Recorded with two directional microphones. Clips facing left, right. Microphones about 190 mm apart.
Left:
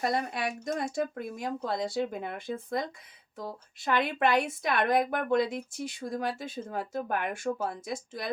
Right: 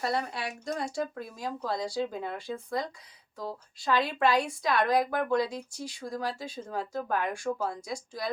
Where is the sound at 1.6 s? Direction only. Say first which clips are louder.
Even; 25° left (ahead or behind).